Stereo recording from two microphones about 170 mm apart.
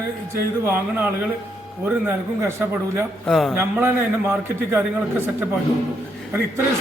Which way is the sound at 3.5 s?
15° right (ahead or behind).